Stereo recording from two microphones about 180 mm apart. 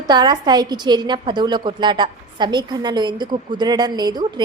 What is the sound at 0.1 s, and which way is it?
A woman's voice, 25° right (ahead or behind).